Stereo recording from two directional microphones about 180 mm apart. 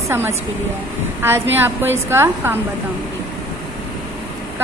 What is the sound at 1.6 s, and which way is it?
Speech, 15° right (ahead or behind).